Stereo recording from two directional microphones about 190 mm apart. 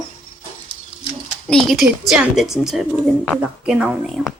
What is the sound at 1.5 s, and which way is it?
Speech, centre (ahead or behind).